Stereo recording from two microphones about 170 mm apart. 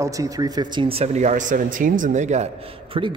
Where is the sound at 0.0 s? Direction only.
20° right (ahead or behind).